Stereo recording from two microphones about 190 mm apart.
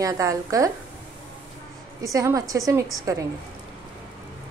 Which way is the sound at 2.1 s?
15° right (ahead or behind).